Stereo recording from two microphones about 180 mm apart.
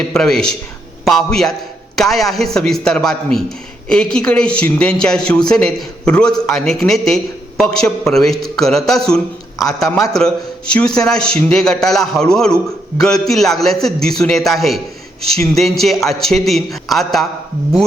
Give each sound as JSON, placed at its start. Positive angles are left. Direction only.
{"t": 0.1, "sound": "a man's voice", "side_deg": 5}